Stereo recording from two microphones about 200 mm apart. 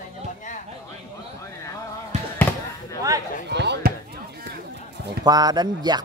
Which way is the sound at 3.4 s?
60° right (ahead or behind).